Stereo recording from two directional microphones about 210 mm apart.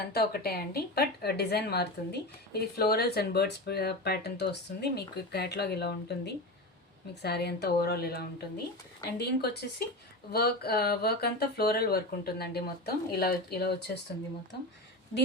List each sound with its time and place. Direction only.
0.0 s a woman's voice: 45° left (ahead or behind)